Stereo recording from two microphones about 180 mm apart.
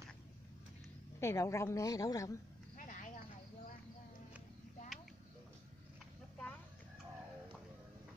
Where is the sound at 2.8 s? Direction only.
45° left (ahead or behind).